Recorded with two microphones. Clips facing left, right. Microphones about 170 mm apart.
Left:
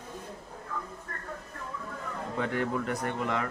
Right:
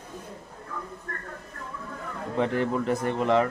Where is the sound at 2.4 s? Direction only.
25° right (ahead or behind).